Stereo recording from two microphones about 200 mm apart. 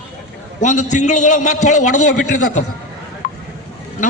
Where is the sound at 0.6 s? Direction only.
40° left (ahead or behind).